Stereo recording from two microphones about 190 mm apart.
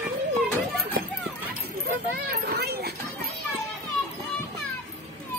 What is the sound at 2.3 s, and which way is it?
Children playing, 55° right (ahead or behind).